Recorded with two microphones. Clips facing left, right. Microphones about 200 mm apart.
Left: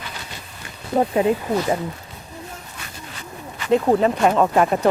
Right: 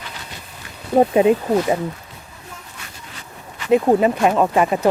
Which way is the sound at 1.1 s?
20° right (ahead or behind).